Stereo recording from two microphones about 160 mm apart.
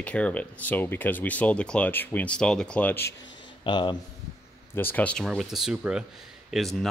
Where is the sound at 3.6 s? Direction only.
30° left (ahead or behind).